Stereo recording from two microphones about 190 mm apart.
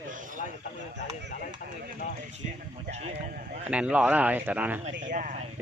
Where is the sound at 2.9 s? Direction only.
35° right (ahead or behind).